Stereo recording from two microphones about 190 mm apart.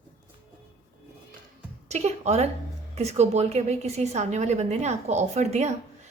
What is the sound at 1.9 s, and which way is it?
A woman's voice, 35° right (ahead or behind).